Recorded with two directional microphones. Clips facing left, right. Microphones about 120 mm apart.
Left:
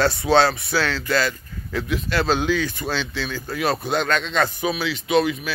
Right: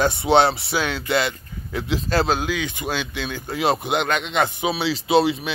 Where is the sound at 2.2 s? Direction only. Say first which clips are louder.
Left 2 dB; 10° right (ahead or behind).